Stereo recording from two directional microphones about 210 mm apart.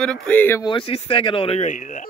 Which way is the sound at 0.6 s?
25° left (ahead or behind).